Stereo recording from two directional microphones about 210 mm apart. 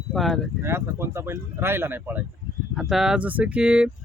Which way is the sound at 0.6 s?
10° right (ahead or behind).